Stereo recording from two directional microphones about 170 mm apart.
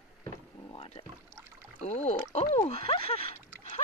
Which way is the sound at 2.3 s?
30° left (ahead or behind).